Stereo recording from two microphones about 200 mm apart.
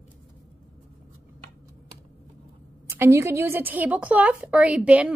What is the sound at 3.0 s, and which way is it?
A woman's voice, 15° right (ahead or behind).